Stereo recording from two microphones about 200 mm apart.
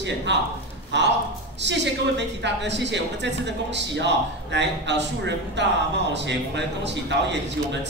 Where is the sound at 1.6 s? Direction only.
60° right (ahead or behind).